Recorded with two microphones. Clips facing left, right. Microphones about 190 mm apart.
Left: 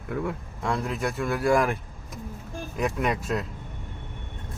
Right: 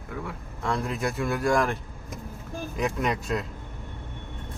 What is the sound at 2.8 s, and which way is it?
Speech, 5° left (ahead or behind).